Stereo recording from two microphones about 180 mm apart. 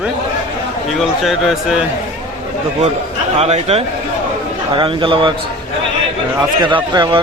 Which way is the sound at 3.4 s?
35° right (ahead or behind).